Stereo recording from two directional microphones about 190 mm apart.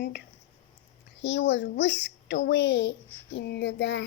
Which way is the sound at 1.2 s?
65° left (ahead or behind).